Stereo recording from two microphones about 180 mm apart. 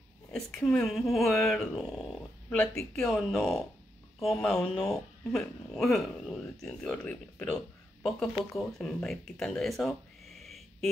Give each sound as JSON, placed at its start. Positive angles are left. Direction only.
{"t": 0.3, "sound": "speech", "side_deg": 0}
{"t": 8.5, "sound": "speech", "side_deg": 0}